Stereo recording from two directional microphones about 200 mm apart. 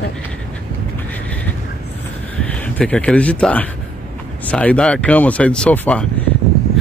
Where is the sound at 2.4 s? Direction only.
5° left (ahead or behind).